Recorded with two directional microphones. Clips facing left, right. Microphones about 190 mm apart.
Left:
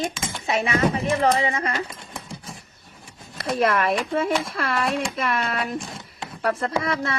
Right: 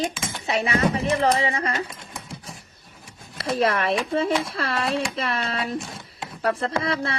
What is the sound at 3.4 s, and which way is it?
Speech, 30° right (ahead or behind).